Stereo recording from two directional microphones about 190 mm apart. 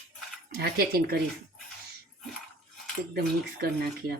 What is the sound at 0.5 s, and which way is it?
Speech, 55° right (ahead or behind).